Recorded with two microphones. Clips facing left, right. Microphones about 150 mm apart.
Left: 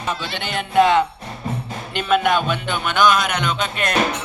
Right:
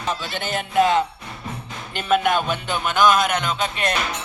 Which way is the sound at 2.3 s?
40° right (ahead or behind).